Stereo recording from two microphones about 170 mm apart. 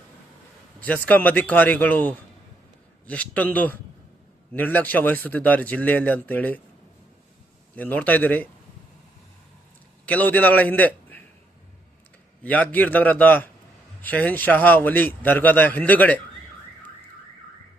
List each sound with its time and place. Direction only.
0.8 s a man's voice: 10° left (ahead or behind)
7.8 s a man's voice: 10° left (ahead or behind)
10.1 s a man's voice: 10° left (ahead or behind)
12.4 s a man's voice: 10° left (ahead or behind)